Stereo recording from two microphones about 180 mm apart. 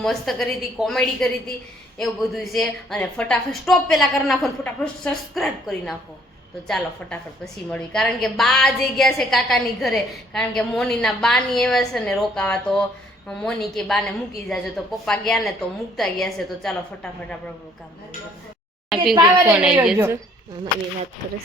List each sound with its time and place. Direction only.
0.0 s a woman's voice: centre (ahead or behind)
19.1 s a woman's voice: 25° right (ahead or behind)
19.5 s a woman's voice: 5° right (ahead or behind)